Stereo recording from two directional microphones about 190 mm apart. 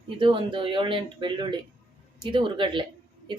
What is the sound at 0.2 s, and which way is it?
Speech, 25° right (ahead or behind).